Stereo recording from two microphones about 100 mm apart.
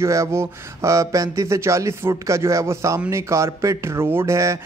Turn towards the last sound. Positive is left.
turn(degrees=-30)  # may be behind; listen again after turning